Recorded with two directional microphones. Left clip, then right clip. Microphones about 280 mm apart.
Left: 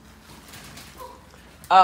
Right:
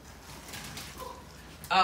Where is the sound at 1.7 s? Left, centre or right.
Centre.